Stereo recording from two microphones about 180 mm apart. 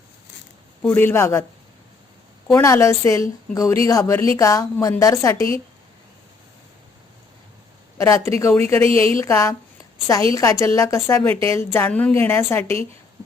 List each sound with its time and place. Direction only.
0.8 s a woman's voice: 10° left (ahead or behind)
2.5 s a woman's voice: 15° left (ahead or behind)
7.9 s a woman's voice: 15° left (ahead or behind)
8.8 s a woman's voice: 30° right (ahead or behind)
9.1 s a woman's voice: 15° left (ahead or behind)